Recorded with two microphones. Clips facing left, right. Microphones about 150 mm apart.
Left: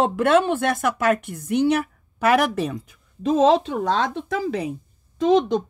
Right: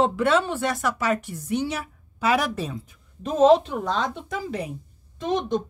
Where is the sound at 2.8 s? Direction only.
90° left.